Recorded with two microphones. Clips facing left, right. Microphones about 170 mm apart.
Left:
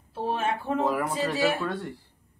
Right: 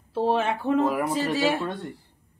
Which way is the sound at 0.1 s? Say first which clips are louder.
Right 5 dB; 90° right.